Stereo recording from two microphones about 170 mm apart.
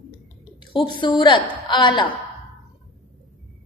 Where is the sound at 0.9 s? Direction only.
25° left (ahead or behind).